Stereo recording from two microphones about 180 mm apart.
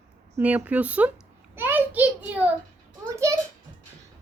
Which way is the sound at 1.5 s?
10° right (ahead or behind).